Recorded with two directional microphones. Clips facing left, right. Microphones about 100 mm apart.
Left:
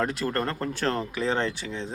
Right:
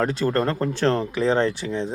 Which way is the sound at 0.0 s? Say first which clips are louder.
Right 5 dB; 30° right (ahead or behind).